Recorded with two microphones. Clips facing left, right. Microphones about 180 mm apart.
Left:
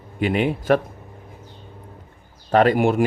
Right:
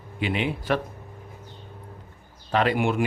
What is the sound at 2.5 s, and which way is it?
Speech, 45° left (ahead or behind).